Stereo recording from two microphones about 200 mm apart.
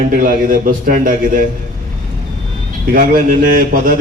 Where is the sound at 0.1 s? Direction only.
45° right (ahead or behind).